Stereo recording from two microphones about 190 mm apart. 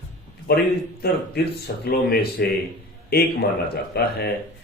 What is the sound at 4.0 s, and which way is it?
Speech, 55° left (ahead or behind).